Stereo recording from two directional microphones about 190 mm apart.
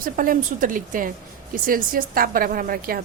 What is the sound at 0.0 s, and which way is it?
A woman's voice, 45° right (ahead or behind).